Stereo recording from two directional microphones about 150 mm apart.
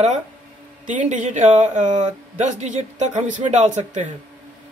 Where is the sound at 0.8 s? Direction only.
55° right (ahead or behind).